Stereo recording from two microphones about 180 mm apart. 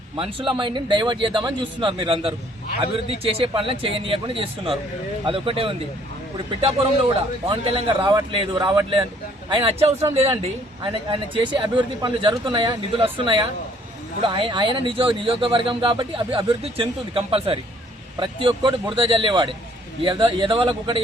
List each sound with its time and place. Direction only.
0.2 s speech: 30° right (ahead or behind)